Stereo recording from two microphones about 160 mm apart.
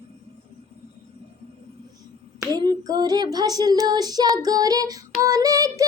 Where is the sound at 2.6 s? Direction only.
25° right (ahead or behind).